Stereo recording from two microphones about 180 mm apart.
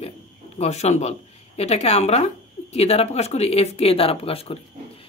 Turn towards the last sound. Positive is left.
turn(degrees=30)  # may be behind; listen again after turning